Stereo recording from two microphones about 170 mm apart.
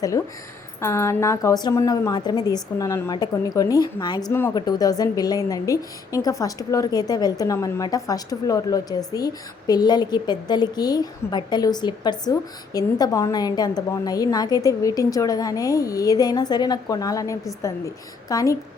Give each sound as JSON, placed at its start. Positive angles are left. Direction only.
{"t": 0.8, "sound": "a woman's voice", "side_deg": 15}